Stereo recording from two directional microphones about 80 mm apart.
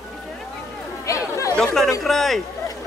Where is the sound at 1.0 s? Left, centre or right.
Left.